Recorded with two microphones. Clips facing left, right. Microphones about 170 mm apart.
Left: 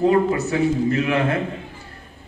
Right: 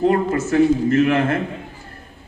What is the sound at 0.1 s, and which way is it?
A man's voice, 45° right (ahead or behind).